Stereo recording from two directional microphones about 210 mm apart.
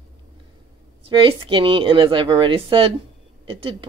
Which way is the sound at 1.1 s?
25° right (ahead or behind).